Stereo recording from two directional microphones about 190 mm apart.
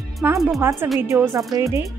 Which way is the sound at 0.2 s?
5° right (ahead or behind).